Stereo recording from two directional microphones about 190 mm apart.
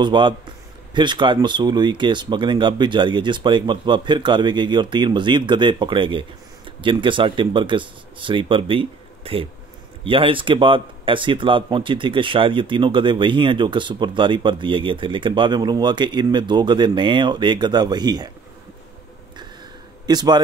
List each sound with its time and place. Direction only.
0.0 s speech: 25° right (ahead or behind)
20.1 s a man's voice: 20° right (ahead or behind)